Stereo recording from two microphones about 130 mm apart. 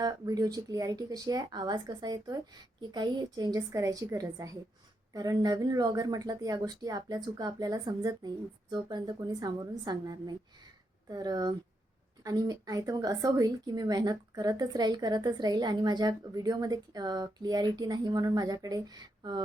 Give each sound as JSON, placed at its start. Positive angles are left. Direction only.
{"t": 0.0, "sound": "a woman's voice", "side_deg": -30}